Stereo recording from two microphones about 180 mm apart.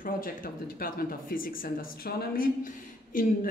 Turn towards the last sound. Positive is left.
turn(degrees=50)  # may be behind; listen again after turning